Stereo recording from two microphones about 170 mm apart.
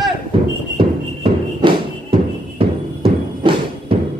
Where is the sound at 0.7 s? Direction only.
30° right (ahead or behind).